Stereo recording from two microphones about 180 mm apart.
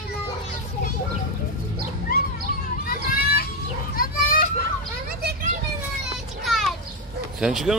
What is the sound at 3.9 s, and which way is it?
Children playing, 55° left (ahead or behind).